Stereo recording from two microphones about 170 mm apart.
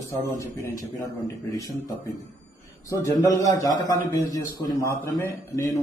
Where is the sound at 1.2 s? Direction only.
20° left (ahead or behind).